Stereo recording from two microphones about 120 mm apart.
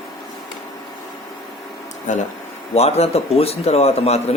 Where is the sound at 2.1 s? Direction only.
90° left.